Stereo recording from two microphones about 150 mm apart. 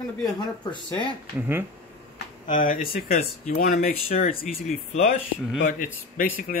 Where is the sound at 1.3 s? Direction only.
15° right (ahead or behind).